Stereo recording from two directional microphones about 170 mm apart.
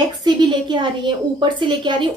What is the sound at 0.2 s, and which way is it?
A woman's voice, 25° right (ahead or behind).